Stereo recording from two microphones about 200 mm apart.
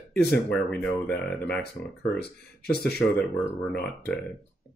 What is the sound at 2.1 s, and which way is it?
Speech, 55° left (ahead or behind).